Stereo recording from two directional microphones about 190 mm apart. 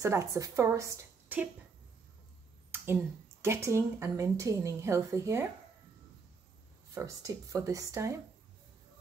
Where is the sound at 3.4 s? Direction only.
15° right (ahead or behind).